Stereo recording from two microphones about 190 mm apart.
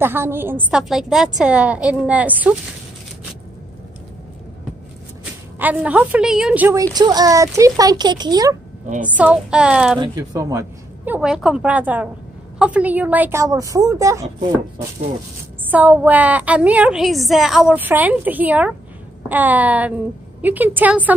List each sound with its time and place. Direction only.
0.0 s a woman's voice: 10° right (ahead or behind)
5.6 s a woman's voice: 10° right (ahead or behind)
9.0 s child singing: 5° right (ahead or behind)
9.9 s a woman's voice: 20° right (ahead or behind)
11.1 s child singing: 5° right (ahead or behind)
12.5 s a woman's voice: 5° right (ahead or behind)
15.7 s a woman's voice: 10° right (ahead or behind)